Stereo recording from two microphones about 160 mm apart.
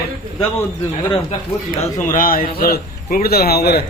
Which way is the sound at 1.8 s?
55° left (ahead or behind).